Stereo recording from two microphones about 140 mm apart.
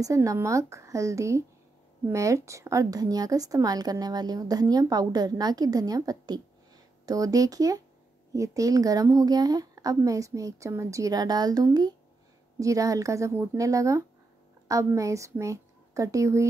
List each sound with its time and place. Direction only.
0.0 s a woman's voice: 25° right (ahead or behind)